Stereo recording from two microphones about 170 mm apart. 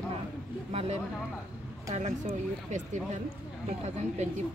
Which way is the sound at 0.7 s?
35° right (ahead or behind).